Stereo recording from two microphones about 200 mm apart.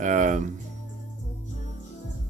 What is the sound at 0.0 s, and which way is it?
Speech, 40° right (ahead or behind).